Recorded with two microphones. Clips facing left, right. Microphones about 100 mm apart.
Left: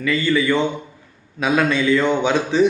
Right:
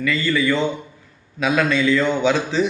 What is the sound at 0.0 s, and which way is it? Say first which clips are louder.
Speech: left 1 dB; 20° left (ahead or behind).